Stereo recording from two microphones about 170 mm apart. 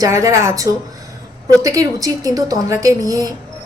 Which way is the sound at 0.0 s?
20° right (ahead or behind).